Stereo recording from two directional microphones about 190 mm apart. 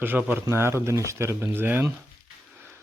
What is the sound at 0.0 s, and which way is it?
Speech, 10° right (ahead or behind).